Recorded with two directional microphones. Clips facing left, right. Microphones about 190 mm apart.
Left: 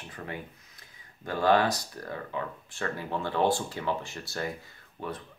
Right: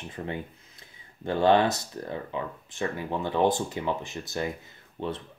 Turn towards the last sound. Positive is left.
turn(degrees=-25)  # may be behind; listen again after turning